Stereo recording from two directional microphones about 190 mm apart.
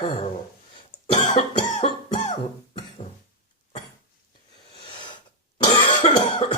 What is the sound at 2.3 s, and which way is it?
Cough, 30° left (ahead or behind).